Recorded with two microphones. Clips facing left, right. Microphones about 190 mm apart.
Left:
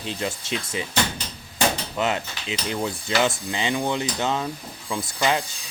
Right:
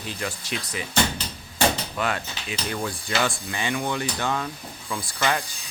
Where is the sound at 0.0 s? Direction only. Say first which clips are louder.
Left 3 dB; 25° left (ahead or behind).